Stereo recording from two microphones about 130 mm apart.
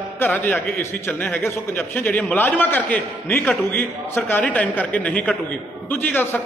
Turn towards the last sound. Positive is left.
turn(degrees=15)  # may be behind; listen again after turning